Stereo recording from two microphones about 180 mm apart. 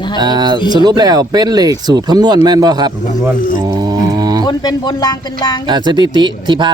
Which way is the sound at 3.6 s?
20° right (ahead or behind).